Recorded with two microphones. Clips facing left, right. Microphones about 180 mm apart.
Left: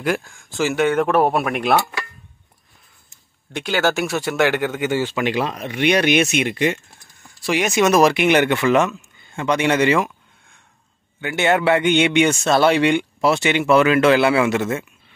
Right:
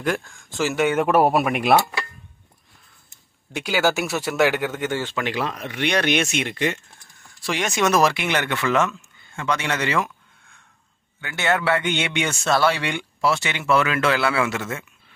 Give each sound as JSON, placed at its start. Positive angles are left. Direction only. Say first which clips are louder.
{"t": 0.0, "sound": "speech", "louder": "left 2 dB", "side_deg": 5}
{"t": 3.5, "sound": "speech", "louder": "left 1 dB", "side_deg": -5}
{"t": 11.1, "sound": "speech", "louder": "left 5 dB", "side_deg": 20}